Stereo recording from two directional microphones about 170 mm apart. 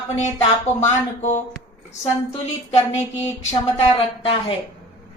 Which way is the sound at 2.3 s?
40° left (ahead or behind).